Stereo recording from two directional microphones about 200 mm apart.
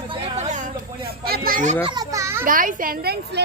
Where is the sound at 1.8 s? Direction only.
20° right (ahead or behind).